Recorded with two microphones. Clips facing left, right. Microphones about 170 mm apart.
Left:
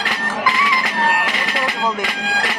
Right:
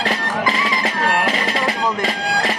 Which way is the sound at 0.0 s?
40° right (ahead or behind).